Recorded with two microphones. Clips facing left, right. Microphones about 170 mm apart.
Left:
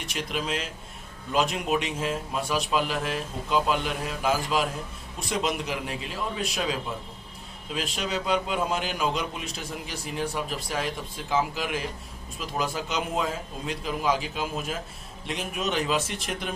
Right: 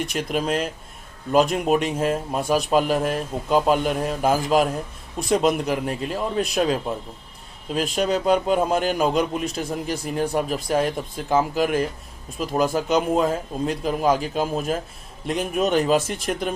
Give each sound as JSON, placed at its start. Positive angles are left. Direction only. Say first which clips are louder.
{"t": 0.1, "sound": "a man's voice", "louder": "right 7 dB", "side_deg": -50}